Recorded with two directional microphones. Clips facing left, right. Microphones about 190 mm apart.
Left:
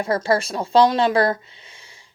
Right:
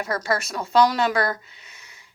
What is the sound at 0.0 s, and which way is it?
Speech, 30° left (ahead or behind).